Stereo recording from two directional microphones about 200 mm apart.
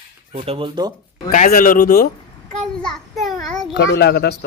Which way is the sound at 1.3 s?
40° left (ahead or behind).